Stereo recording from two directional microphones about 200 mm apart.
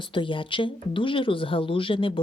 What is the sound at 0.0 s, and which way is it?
Speech, 25° left (ahead or behind).